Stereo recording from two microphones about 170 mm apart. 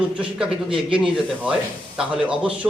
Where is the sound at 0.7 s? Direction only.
30° right (ahead or behind).